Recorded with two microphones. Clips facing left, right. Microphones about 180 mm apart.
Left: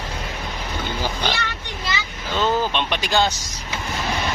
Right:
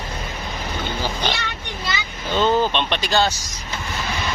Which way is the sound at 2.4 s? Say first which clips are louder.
Right 2 dB; 10° left (ahead or behind).